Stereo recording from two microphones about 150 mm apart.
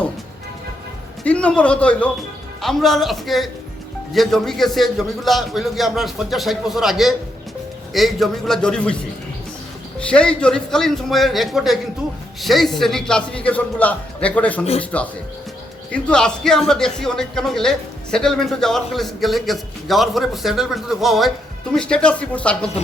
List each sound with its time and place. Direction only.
1.2 s a man's voice: 10° left (ahead or behind)
10.1 s speech: 5° left (ahead or behind)
14.6 s a man's voice: 45° left (ahead or behind)
15.9 s speech: 5° left (ahead or behind)